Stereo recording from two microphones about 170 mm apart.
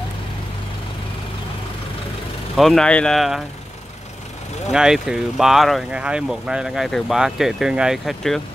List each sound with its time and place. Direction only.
2.5 s speech: centre (ahead or behind)
4.6 s speech: centre (ahead or behind)